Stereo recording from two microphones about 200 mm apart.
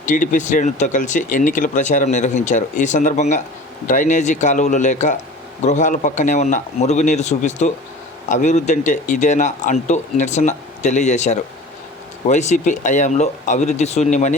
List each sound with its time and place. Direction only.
0.0 s speech: 40° left (ahead or behind)